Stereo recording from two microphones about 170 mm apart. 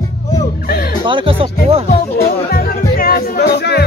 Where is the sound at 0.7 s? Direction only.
65° left (ahead or behind).